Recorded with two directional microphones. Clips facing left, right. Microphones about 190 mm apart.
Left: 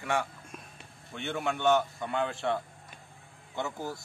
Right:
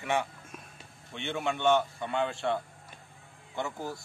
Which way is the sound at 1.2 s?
Centre (ahead or behind).